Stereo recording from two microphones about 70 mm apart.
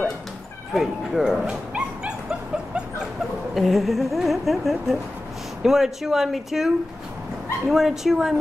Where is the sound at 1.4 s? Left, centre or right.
Centre.